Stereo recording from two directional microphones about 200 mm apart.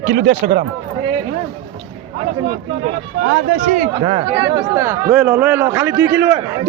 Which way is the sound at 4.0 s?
25° right (ahead or behind).